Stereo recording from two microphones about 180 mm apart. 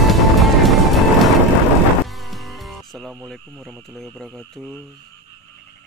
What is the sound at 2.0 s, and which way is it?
Music, centre (ahead or behind).